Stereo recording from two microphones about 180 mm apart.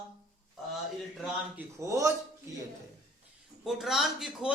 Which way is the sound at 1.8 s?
15° right (ahead or behind).